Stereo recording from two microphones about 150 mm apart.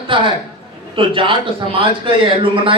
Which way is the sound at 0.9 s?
35° right (ahead or behind).